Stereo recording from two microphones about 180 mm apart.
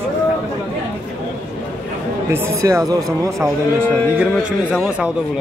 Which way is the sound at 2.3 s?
15° right (ahead or behind).